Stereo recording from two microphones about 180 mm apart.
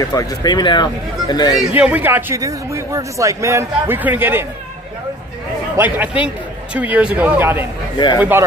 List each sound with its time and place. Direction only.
0.0 s speech: 20° left (ahead or behind)
1.8 s a man's voice: 10° right (ahead or behind)
5.8 s a man's voice: 10° right (ahead or behind)